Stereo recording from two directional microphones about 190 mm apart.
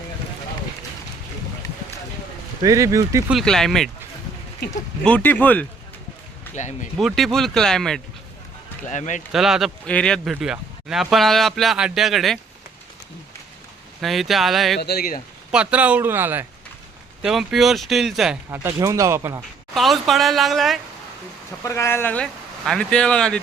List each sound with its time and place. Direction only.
1.6 s a sound: 20° left (ahead or behind)
2.6 s speech: 15° right (ahead or behind)
3.2 s speech: centre (ahead or behind)
5.0 s speech: 10° left (ahead or behind)
6.6 s speech: 40° left (ahead or behind)
7.0 s speech: centre (ahead or behind)
8.9 s speech: 40° left (ahead or behind)
9.3 s speech: centre (ahead or behind)
14.0 s speech: centre (ahead or behind)
14.8 s speech: 55° left (ahead or behind)
15.5 s speech: 5° right (ahead or behind)
18.5 s speech: 15° right (ahead or behind)
19.7 s speech: centre (ahead or behind)
21.6 s speech: 15° left (ahead or behind)